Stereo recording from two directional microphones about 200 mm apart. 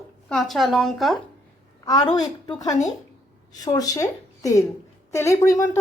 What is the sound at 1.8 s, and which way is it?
A woman's voice, 20° left (ahead or behind).